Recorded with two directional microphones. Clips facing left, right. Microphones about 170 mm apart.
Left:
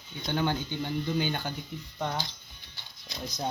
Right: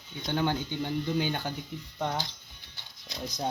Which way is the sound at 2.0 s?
20° right (ahead or behind).